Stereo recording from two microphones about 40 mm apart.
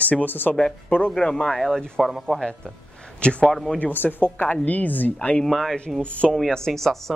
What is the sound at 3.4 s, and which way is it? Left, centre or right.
Speech, centre.